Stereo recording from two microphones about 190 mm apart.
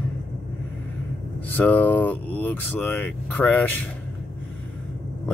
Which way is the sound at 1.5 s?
10° left (ahead or behind).